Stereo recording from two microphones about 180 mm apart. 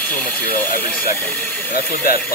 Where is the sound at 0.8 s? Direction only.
10° left (ahead or behind).